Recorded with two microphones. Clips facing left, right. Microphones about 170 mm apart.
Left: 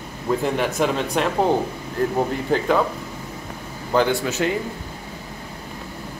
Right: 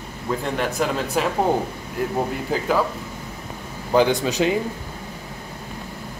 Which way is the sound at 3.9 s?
15° right (ahead or behind).